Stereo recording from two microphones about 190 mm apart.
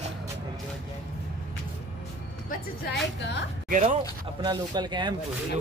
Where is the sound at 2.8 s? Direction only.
60° left (ahead or behind).